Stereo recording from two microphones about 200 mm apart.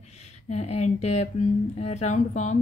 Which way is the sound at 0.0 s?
35° left (ahead or behind).